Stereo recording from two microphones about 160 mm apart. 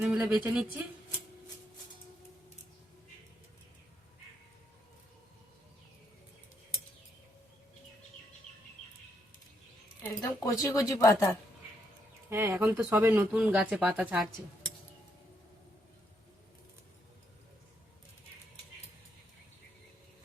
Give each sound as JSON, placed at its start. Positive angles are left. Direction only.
{"t": 0.0, "sound": "speech", "side_deg": -5}
{"t": 10.0, "sound": "a woman's voice", "side_deg": 20}
{"t": 12.3, "sound": "speech", "side_deg": -15}